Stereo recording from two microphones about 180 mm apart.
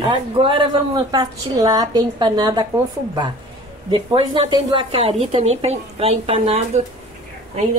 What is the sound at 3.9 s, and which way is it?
A woman's voice, 30° right (ahead or behind).